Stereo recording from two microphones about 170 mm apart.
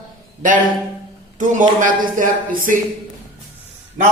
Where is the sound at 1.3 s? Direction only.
50° right (ahead or behind).